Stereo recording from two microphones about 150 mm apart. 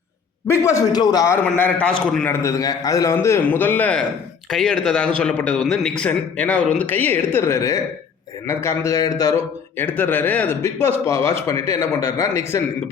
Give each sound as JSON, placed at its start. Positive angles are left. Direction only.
{"t": 0.6, "sound": "a man's voice", "side_deg": 25}
{"t": 1.5, "sound": "a man's voice", "side_deg": 10}
{"t": 2.3, "sound": "a man's voice", "side_deg": 20}